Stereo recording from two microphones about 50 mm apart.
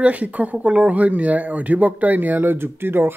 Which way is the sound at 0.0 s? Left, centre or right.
Right.